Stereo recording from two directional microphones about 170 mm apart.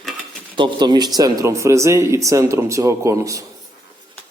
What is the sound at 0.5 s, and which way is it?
Speech, 25° right (ahead or behind).